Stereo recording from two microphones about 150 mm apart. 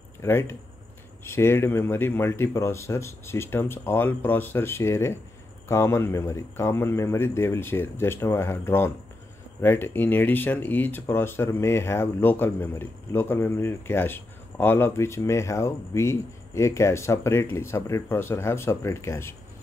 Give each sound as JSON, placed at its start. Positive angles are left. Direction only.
{"t": 0.2, "sound": "speech", "side_deg": 15}